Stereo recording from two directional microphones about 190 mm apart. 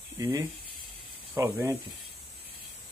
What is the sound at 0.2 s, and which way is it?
Speech, 20° right (ahead or behind).